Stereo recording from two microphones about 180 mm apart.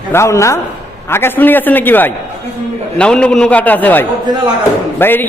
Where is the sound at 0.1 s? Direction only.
15° left (ahead or behind).